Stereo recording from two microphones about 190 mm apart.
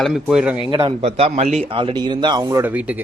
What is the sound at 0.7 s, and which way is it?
Speech, 30° right (ahead or behind).